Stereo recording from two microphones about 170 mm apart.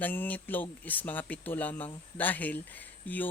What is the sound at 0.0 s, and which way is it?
Speech, 10° left (ahead or behind).